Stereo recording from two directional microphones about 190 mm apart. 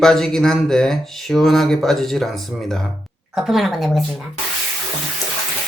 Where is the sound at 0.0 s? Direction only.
Centre (ahead or behind).